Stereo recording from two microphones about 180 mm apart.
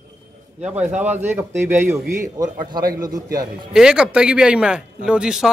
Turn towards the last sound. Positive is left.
turn(degrees=-5)  # may be behind; listen again after turning